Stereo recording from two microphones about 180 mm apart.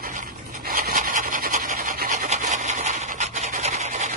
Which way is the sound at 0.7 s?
50° right (ahead or behind).